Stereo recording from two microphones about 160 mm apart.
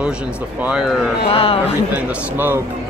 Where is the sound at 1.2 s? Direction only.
35° left (ahead or behind).